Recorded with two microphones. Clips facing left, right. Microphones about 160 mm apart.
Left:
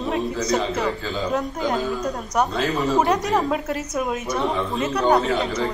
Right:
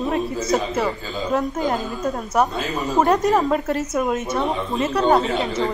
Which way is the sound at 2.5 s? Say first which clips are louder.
Left 3 dB; 20° right (ahead or behind).